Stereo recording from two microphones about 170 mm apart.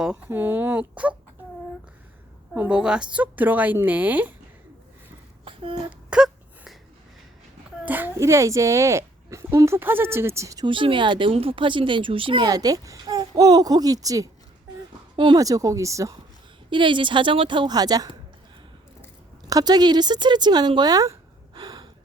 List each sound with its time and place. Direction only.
0.0 s speech: 5° right (ahead or behind)
2.6 s speech: 5° right (ahead or behind)
5.5 s a sound: 30° right (ahead or behind)
6.1 s a sound: centre (ahead or behind)
7.9 s a woman's voice: 10° right (ahead or behind)
19.5 s speech: 20° right (ahead or behind)